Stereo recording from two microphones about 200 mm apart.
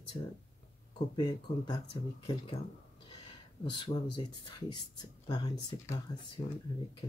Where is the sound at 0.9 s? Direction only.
20° left (ahead or behind).